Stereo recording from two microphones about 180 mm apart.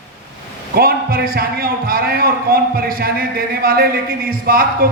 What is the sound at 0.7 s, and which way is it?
A man's voice, 55° right (ahead or behind).